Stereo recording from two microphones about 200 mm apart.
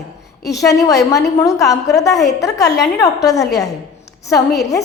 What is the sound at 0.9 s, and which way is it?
A woman's voice, 15° left (ahead or behind).